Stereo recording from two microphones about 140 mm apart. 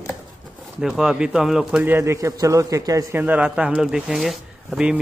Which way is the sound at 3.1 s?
10° right (ahead or behind).